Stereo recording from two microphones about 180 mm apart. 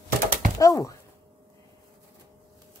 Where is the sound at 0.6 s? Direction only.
20° left (ahead or behind).